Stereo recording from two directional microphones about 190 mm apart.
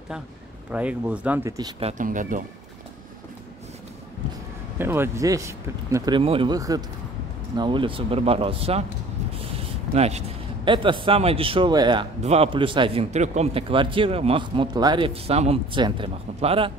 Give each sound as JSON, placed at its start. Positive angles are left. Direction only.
{"t": 0.7, "sound": "speech", "side_deg": -5}
{"t": 1.8, "sound": "speech", "side_deg": -35}
{"t": 4.7, "sound": "speech", "side_deg": -10}